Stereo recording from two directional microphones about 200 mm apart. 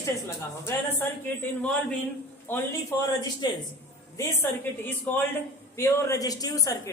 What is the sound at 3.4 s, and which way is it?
Speech, 20° left (ahead or behind).